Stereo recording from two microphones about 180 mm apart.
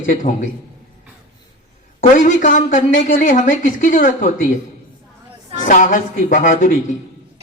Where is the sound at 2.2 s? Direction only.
45° left (ahead or behind).